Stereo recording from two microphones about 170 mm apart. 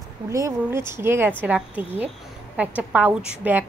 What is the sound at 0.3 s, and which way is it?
A woman's voice, 15° right (ahead or behind).